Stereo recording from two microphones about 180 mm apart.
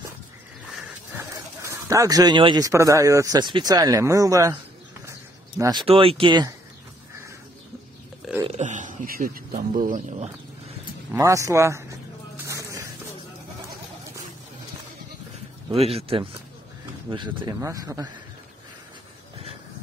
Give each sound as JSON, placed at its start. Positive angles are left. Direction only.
{"t": 1.7, "sound": "speech", "side_deg": -15}
{"t": 5.6, "sound": "speech", "side_deg": -25}
{"t": 8.5, "sound": "a man's voice", "side_deg": -40}
{"t": 11.1, "sound": "speech", "side_deg": -15}
{"t": 12.4, "sound": "music", "side_deg": -15}
{"t": 15.7, "sound": "speech", "side_deg": -35}